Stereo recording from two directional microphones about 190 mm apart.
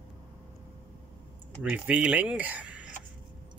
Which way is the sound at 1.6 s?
5° right (ahead or behind).